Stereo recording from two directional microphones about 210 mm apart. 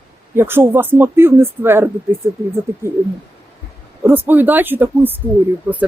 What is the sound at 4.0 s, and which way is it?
Speech, 10° right (ahead or behind).